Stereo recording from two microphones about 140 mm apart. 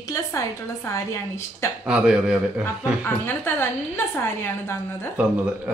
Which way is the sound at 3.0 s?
15° left (ahead or behind).